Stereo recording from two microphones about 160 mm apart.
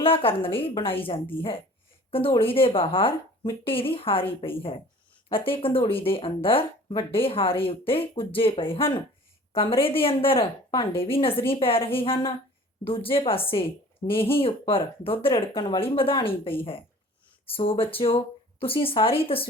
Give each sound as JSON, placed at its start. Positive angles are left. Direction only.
{"t": 0.0, "sound": "speech", "side_deg": 35}